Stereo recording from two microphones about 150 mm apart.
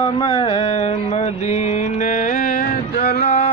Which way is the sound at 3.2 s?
45° left (ahead or behind).